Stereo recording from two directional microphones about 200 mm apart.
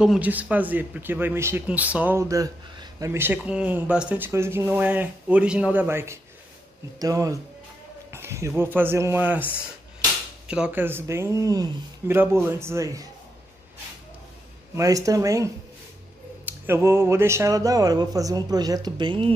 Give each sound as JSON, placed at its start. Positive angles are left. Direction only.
{"t": 0.0, "sound": "speech", "side_deg": -5}
{"t": 10.5, "sound": "speech", "side_deg": -5}
{"t": 14.8, "sound": "speech", "side_deg": -15}